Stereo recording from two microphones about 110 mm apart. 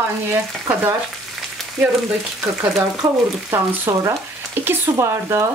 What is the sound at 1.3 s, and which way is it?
Frying, 5° right (ahead or behind).